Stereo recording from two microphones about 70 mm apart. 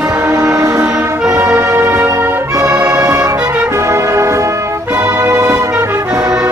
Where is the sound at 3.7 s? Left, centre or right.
Right.